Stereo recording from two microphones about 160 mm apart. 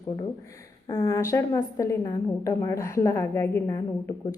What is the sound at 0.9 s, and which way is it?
A woman's voice, 20° left (ahead or behind).